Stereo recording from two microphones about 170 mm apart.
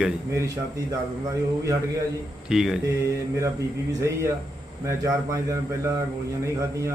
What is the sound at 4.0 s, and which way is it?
A man's voice, 20° right (ahead or behind).